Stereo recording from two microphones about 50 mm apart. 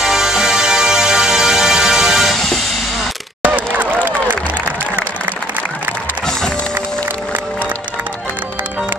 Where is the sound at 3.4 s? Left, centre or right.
Right.